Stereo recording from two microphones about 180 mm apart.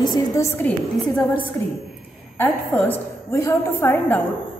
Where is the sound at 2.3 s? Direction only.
10° left (ahead or behind).